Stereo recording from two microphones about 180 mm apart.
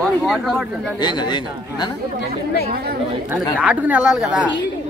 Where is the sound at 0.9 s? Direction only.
25° left (ahead or behind).